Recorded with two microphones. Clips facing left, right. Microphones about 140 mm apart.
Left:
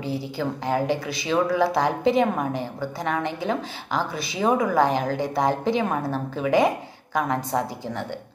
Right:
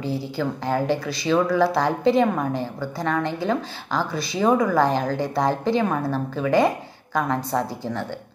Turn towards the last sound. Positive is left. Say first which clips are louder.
# right 1 dB
turn(degrees=15)  # may be behind; listen again after turning